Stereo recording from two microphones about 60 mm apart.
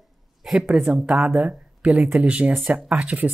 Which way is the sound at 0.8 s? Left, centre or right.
Centre.